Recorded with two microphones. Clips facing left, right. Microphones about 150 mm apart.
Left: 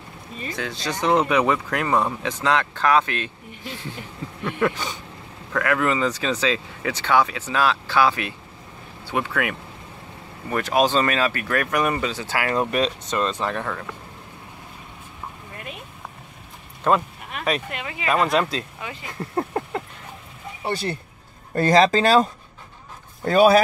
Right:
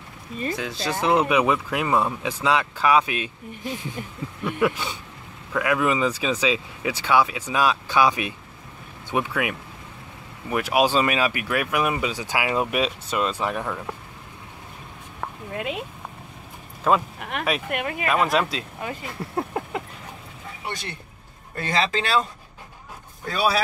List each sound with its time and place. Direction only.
0.6 s speech: 5° right (ahead or behind)
4.5 s speech: 5° right (ahead or behind)
15.1 s a sound: 90° right
16.9 s speech: 5° right (ahead or behind)
17.2 s speech: 65° right (ahead or behind)
17.6 s speech: 55° right (ahead or behind)
18.0 s speech: centre (ahead or behind)
20.6 s speech: 35° left (ahead or behind)
23.2 s speech: 45° left (ahead or behind)